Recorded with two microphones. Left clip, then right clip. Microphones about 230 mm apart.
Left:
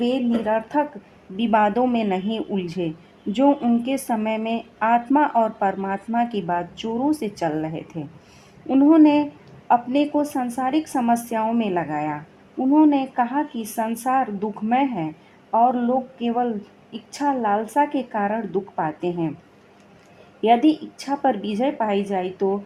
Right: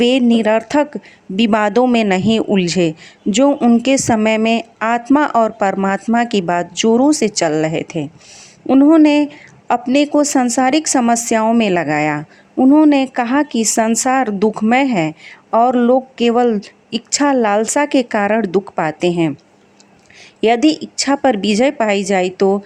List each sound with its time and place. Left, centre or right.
0.0 s a woman's voice: right
20.4 s a woman's voice: right